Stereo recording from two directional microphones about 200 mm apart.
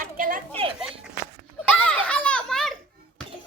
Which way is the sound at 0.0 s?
45° right (ahead or behind).